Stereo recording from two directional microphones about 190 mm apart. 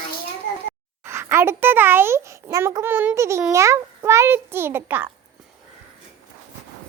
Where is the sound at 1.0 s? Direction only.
15° right (ahead or behind).